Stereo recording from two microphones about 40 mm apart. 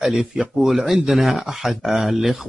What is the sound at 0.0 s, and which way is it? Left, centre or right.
Speech, centre.